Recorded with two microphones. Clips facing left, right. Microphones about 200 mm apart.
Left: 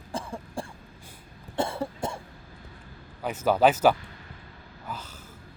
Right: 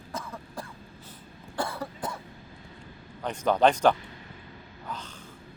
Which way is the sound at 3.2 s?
5° left (ahead or behind).